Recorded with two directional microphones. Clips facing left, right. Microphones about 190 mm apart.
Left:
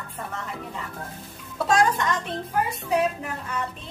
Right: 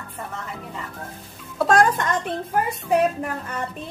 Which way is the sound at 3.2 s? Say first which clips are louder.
Right 3 dB; 45° right (ahead or behind).